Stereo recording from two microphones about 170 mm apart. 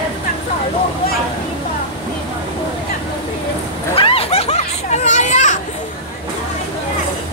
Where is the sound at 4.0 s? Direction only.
35° left (ahead or behind).